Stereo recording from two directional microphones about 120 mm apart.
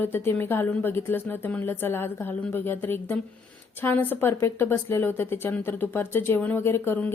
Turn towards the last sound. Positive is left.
turn(degrees=20)  # may be behind; listen again after turning